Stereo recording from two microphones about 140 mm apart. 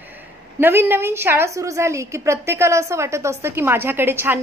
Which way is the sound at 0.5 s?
15° right (ahead or behind).